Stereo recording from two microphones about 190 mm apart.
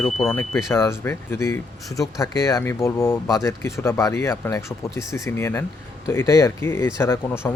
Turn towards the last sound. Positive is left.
turn(degrees=15)  # may be behind; listen again after turning